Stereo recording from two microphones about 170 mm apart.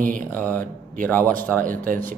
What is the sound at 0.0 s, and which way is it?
Speech, 50° right (ahead or behind).